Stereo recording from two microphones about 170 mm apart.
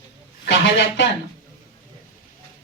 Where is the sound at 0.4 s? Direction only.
90° left.